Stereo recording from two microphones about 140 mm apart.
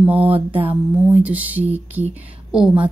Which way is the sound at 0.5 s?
40° right (ahead or behind).